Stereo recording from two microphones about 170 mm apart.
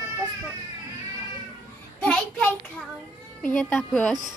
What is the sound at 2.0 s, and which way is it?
Child singing, 5° left (ahead or behind).